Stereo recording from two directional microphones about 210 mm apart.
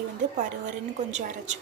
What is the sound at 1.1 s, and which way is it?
Speech, 35° right (ahead or behind).